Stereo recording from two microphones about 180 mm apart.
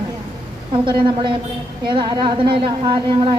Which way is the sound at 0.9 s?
25° right (ahead or behind).